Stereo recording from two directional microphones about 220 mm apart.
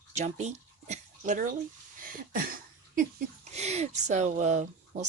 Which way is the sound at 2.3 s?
40° right (ahead or behind).